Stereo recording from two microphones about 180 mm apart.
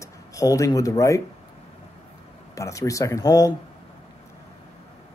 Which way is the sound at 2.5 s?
15° left (ahead or behind).